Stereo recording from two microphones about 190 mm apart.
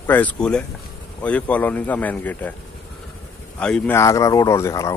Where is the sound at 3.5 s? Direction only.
5° left (ahead or behind).